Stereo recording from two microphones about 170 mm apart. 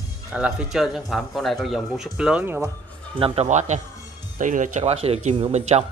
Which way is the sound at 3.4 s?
45° right (ahead or behind).